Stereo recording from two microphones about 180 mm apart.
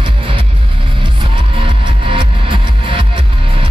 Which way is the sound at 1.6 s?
25° right (ahead or behind).